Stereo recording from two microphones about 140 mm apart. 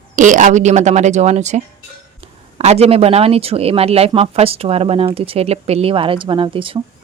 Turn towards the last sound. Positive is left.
turn(degrees=-40)  # may be behind; listen again after turning